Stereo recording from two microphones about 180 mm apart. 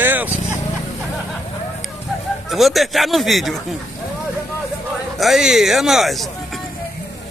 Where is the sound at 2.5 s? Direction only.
Centre (ahead or behind).